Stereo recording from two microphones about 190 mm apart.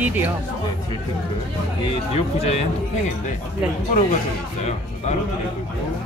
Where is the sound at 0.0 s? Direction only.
10° right (ahead or behind).